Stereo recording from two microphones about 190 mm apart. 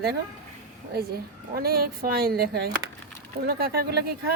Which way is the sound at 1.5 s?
50° right (ahead or behind).